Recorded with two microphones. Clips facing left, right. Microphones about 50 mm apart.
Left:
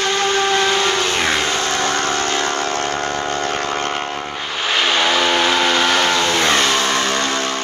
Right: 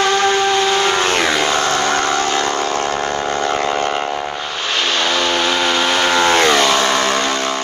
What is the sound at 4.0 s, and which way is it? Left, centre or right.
Vehicle, centre.